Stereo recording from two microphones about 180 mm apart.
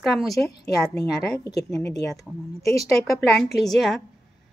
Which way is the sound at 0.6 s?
20° left (ahead or behind).